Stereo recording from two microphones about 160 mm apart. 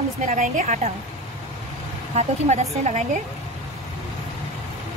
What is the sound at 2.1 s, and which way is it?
Speech, 45° right (ahead or behind).